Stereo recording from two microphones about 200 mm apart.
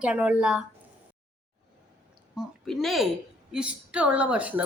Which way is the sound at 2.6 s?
Centre (ahead or behind).